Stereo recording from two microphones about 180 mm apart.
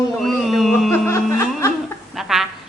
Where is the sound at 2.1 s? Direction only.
Centre (ahead or behind).